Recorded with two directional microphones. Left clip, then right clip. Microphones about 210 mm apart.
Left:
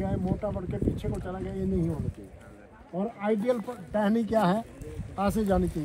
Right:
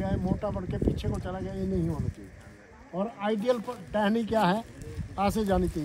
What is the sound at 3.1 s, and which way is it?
Speech, 30° right (ahead or behind).